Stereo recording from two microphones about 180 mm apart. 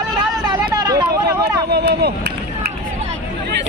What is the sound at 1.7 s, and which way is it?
Speech, 65° right (ahead or behind).